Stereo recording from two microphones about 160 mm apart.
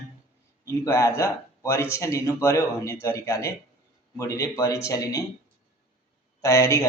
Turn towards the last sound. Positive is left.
turn(degrees=20)  # may be behind; listen again after turning